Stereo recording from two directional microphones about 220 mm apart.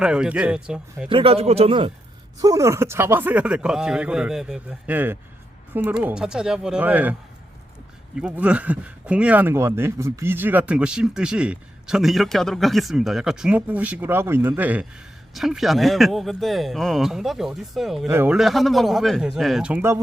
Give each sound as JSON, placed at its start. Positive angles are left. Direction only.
{"t": 0.0, "sound": "speech", "side_deg": -5}
{"t": 1.1, "sound": "speech", "side_deg": -25}
{"t": 2.4, "sound": "a woman's voice", "side_deg": -15}
{"t": 8.2, "sound": "speech", "side_deg": -5}